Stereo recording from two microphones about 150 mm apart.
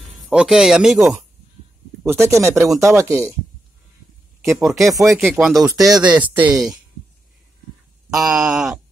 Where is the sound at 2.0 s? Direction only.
15° right (ahead or behind).